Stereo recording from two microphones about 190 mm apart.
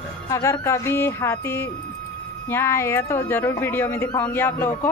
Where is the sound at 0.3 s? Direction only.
15° left (ahead or behind).